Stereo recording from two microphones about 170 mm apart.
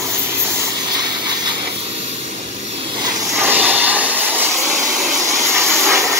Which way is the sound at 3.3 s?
10° right (ahead or behind).